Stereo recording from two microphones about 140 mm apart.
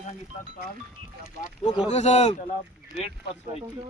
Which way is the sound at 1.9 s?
50° left (ahead or behind).